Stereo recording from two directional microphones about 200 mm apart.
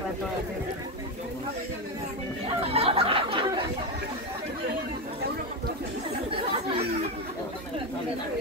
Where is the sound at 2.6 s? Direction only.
30° right (ahead or behind).